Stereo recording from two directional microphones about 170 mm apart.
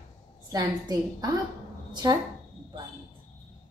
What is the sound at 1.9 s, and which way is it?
Speech, 25° right (ahead or behind).